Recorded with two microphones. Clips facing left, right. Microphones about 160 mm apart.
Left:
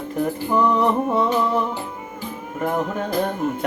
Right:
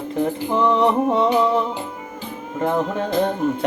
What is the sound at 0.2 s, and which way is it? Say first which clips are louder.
Music: even; 20° right (ahead or behind).